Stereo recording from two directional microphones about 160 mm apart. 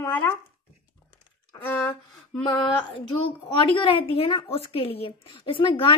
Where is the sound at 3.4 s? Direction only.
30° left (ahead or behind).